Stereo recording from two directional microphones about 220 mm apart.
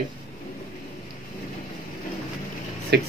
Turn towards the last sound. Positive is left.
turn(degrees=-45)  # may be behind; listen again after turning